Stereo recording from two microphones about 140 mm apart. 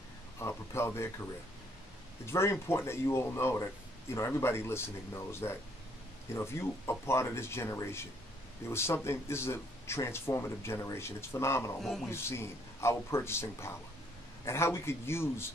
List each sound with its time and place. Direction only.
0.4 s speech: 20° left (ahead or behind)
2.2 s speech: 20° left (ahead or behind)
11.8 s speech: 5° left (ahead or behind)
12.1 s a man's voice: 20° left (ahead or behind)